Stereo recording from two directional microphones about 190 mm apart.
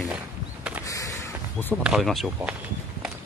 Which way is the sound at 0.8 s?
15° left (ahead or behind).